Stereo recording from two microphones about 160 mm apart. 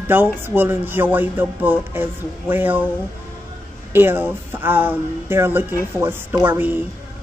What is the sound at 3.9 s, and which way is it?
Speech, 15° right (ahead or behind).